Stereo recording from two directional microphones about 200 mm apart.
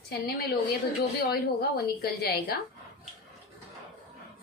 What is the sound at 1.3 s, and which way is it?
A woman's voice, 50° left (ahead or behind).